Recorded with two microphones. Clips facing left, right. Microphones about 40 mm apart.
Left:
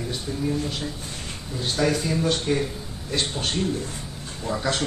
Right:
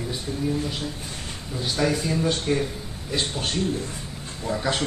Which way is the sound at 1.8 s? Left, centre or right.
Centre.